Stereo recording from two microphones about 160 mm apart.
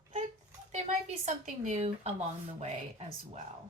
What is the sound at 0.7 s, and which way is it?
Speech, 45° right (ahead or behind).